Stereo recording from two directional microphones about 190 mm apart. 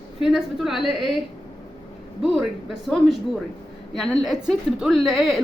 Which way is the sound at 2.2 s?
Centre (ahead or behind).